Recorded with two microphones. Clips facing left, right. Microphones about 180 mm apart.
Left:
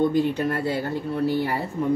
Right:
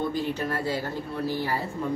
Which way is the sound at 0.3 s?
55° left (ahead or behind).